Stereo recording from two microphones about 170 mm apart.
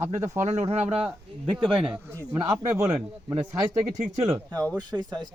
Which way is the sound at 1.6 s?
5° right (ahead or behind).